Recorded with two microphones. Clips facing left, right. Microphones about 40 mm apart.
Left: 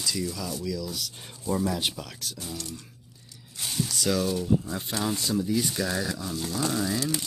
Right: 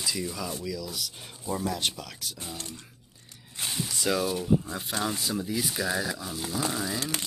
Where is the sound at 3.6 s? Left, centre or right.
Centre.